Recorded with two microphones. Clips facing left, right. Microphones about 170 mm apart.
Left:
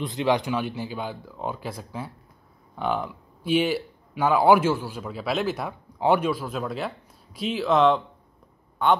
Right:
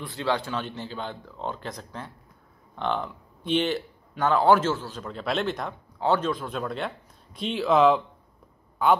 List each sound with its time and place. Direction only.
0.0 s a man's voice: 15° left (ahead or behind); by 9.0 s centre (ahead or behind)